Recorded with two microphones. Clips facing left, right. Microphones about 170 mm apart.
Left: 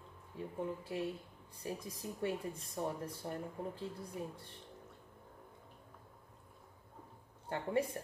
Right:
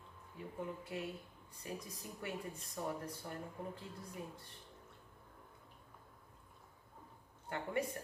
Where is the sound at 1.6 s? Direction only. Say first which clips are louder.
Left 4 dB; 30° left (ahead or behind).